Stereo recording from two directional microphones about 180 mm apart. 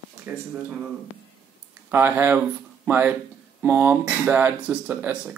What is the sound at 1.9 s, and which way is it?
Speech, 10° right (ahead or behind).